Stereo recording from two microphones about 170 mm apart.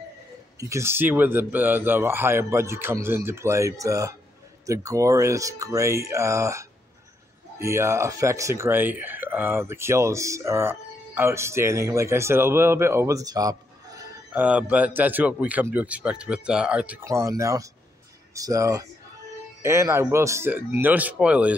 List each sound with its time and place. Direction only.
0.6 s speech: 15° right (ahead or behind)
14.3 s speech: 10° right (ahead or behind)